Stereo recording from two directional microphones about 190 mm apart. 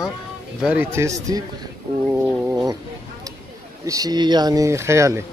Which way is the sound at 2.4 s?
5° right (ahead or behind).